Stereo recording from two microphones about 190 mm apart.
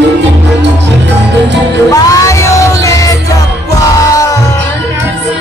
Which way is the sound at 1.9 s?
15° left (ahead or behind).